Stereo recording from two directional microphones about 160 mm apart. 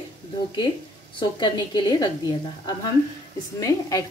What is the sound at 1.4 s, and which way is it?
A woman's voice, 25° left (ahead or behind).